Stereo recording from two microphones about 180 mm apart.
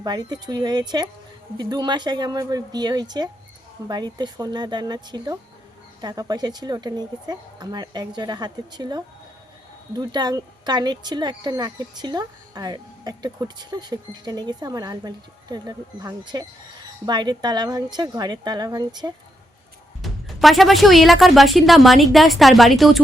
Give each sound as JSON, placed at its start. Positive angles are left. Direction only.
{"t": 0.0, "sound": "speech", "side_deg": -20}
{"t": 20.0, "sound": "speech", "side_deg": 0}